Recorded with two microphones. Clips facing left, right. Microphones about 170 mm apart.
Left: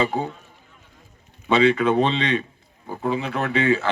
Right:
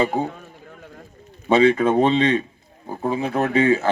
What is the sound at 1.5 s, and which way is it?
A man's voice, 45° right (ahead or behind).